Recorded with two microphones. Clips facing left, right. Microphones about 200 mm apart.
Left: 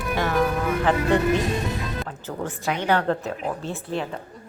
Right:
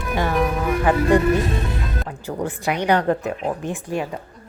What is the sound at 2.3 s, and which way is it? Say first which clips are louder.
A woman's voice: right 4 dB; 15° right (ahead or behind).